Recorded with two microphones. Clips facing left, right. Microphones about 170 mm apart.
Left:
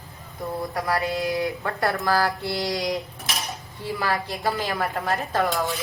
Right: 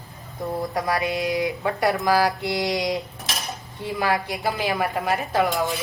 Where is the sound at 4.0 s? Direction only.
15° right (ahead or behind).